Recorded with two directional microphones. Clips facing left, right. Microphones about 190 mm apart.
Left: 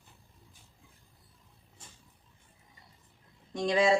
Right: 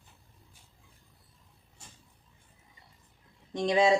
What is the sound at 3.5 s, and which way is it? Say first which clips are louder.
Speech: right 2 dB; 20° right (ahead or behind).